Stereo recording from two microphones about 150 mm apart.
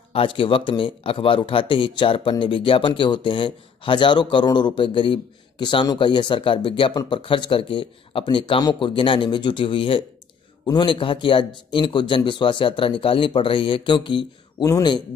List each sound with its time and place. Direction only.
0.1 s a man's voice: 35° left (ahead or behind)